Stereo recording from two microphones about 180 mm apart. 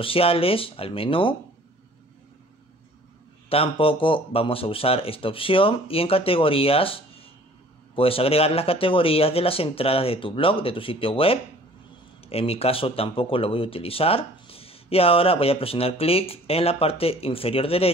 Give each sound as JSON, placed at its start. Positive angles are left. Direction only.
{"t": 0.0, "sound": "speech", "side_deg": 30}
{"t": 3.4, "sound": "speech", "side_deg": 30}